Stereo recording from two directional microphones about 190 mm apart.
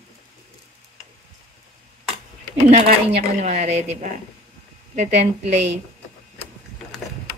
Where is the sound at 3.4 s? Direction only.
35° right (ahead or behind).